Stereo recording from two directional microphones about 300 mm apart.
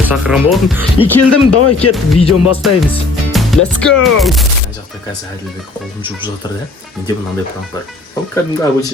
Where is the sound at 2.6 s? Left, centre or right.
Centre.